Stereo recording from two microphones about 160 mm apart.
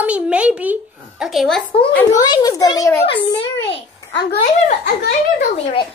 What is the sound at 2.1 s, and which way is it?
Speech, 25° left (ahead or behind).